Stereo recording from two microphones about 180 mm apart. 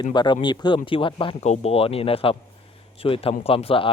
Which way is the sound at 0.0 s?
25° left (ahead or behind).